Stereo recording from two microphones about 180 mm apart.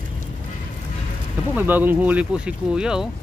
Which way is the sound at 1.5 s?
10° right (ahead or behind).